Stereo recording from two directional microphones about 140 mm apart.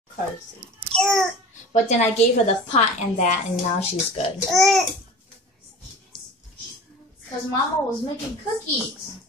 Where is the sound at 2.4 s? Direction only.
55° left (ahead or behind).